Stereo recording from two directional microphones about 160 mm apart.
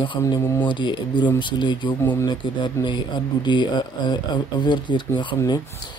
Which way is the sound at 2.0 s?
15° left (ahead or behind).